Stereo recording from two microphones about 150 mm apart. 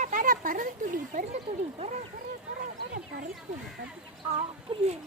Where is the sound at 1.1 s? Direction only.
50° right (ahead or behind).